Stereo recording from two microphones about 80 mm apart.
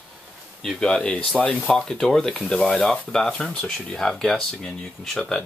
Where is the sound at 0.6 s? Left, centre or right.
Centre.